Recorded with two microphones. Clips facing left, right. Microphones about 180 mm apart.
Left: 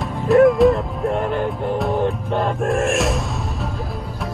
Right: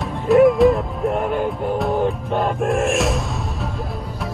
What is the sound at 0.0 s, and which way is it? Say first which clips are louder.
Music: even; centre (ahead or behind).